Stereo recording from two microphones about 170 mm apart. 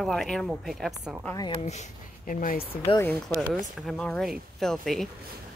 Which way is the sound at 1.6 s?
45° left (ahead or behind).